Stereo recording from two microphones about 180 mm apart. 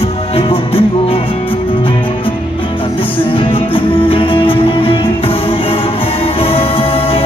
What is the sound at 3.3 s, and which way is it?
Music, 30° left (ahead or behind).